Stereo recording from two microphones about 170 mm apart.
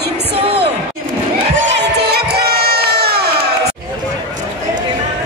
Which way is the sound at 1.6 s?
90° right.